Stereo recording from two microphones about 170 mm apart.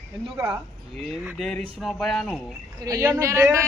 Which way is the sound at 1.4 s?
5° left (ahead or behind).